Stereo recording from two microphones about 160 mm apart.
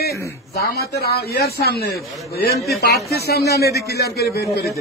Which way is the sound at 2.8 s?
90° left.